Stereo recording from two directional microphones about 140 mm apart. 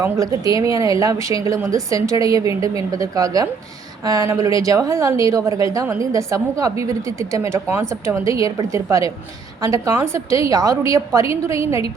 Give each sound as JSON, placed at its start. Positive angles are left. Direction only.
{"t": 0.0, "sound": "a woman's voice", "side_deg": -25}